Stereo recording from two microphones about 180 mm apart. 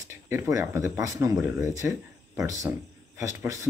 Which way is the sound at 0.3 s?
15° right (ahead or behind).